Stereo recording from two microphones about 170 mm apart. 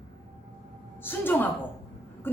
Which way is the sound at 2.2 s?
10° left (ahead or behind).